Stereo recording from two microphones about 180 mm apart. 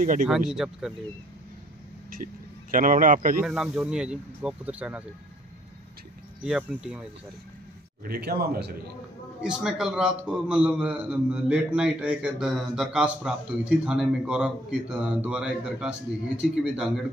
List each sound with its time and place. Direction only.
0.0 s a man's voice: 50° right (ahead or behind)
0.5 s a man's voice: 5° right (ahead or behind)
2.7 s a man's voice: 50° right (ahead or behind)
3.3 s a man's voice: 5° right (ahead or behind)
6.4 s a man's voice: 5° right (ahead or behind)
8.0 s speech: 55° right (ahead or behind)
9.4 s a man's voice: 5° right (ahead or behind)